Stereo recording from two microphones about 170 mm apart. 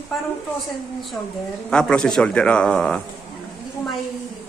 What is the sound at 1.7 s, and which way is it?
Speech, 5° left (ahead or behind).